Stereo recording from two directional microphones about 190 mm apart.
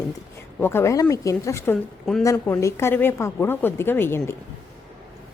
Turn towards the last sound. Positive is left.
turn(degrees=10)  # may be behind; listen again after turning